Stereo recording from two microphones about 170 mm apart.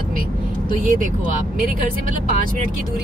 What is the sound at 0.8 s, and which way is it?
Speech, 50° right (ahead or behind).